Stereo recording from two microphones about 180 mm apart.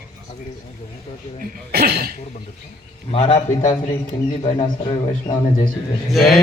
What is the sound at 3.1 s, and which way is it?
A man's voice, 35° left (ahead or behind).